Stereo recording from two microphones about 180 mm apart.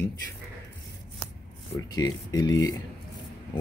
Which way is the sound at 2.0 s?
20° left (ahead or behind).